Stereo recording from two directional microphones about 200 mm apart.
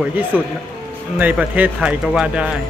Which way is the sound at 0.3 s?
5° right (ahead or behind).